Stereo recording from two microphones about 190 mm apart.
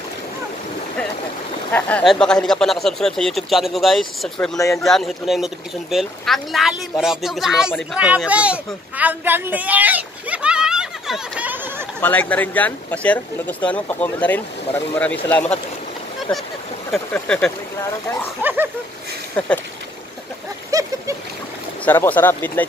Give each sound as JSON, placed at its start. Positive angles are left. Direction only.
{"t": 1.7, "sound": "speech", "side_deg": 10}
{"t": 12.0, "sound": "speech", "side_deg": 10}
{"t": 18.4, "sound": "speech", "side_deg": -10}
{"t": 19.4, "sound": "speech", "side_deg": 5}
{"t": 20.7, "sound": "splash", "side_deg": -20}
{"t": 21.8, "sound": "speech", "side_deg": 10}